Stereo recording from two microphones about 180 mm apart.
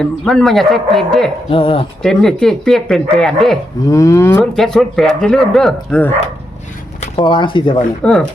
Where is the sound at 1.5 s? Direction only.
30° left (ahead or behind).